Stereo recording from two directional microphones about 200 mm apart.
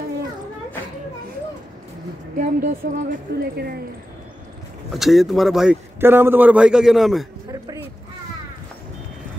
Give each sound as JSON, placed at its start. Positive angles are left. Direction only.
{"t": 2.3, "sound": "a woman's voice", "side_deg": -45}
{"t": 4.9, "sound": "a man's voice", "side_deg": 0}